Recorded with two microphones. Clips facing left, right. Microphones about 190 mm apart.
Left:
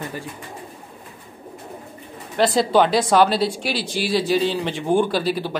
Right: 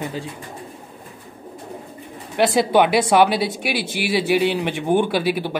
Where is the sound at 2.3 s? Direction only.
15° right (ahead or behind).